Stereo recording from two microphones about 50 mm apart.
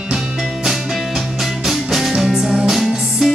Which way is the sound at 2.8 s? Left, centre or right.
Centre.